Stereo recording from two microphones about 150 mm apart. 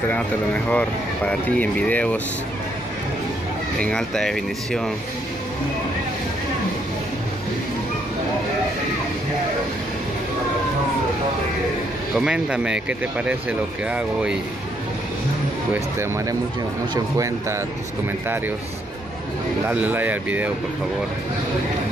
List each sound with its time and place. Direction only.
0.7 s speech: 10° left (ahead or behind)
3.8 s speech: 5° left (ahead or behind)
12.2 s speech: 5° right (ahead or behind)
15.7 s a man's voice: 15° right (ahead or behind)
19.7 s speech: 10° right (ahead or behind)